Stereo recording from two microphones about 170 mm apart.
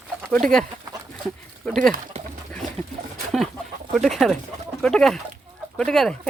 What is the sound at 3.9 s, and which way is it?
Speech, centre (ahead or behind).